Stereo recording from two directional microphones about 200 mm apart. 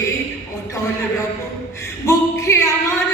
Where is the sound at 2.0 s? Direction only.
15° left (ahead or behind).